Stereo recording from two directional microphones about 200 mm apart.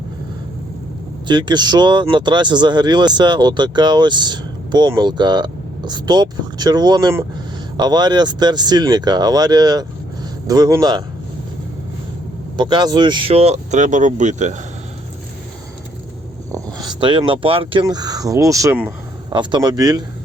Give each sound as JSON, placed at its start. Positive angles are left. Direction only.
{"t": 1.3, "sound": "speech", "side_deg": -20}
{"t": 12.5, "sound": "speech", "side_deg": -20}
{"t": 16.5, "sound": "speech", "side_deg": -20}
{"t": 19.3, "sound": "speech", "side_deg": -25}